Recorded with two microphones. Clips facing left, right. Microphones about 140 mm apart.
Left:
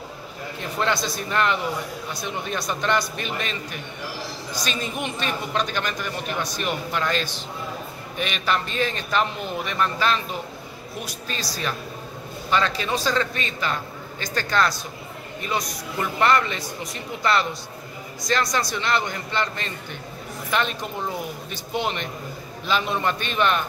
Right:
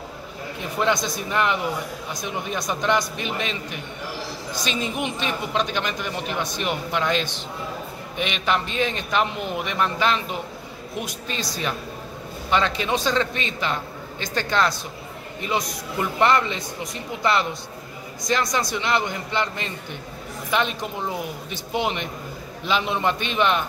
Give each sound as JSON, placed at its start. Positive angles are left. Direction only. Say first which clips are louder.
{"t": 0.6, "sound": "a man's voice", "louder": "right 2 dB", "side_deg": -10}
{"t": 4.6, "sound": "a man's voice", "louder": "right 3 dB", "side_deg": -20}
{"t": 21.5, "sound": "a man's voice", "louder": "right 2 dB", "side_deg": -15}